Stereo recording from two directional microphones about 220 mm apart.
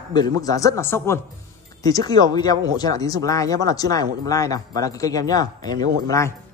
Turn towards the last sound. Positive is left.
turn(degrees=15)  # may be behind; listen again after turning